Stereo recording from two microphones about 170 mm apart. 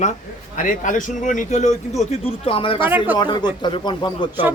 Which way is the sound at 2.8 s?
10° right (ahead or behind).